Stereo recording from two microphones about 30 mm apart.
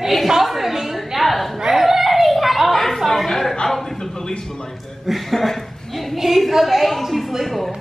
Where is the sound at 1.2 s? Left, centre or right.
Centre.